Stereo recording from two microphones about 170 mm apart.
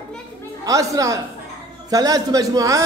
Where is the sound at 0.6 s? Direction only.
20° right (ahead or behind).